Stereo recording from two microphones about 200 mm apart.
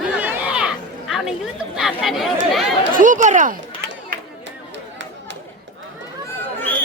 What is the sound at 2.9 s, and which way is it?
Speech, 40° right (ahead or behind).